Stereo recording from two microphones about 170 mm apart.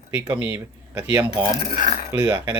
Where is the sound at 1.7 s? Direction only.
50° left (ahead or behind).